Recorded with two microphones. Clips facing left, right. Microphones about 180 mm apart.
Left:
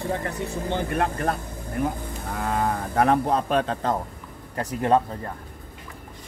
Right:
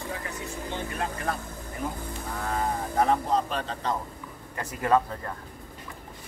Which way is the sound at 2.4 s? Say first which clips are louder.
Left 4 dB; 70° left (ahead or behind).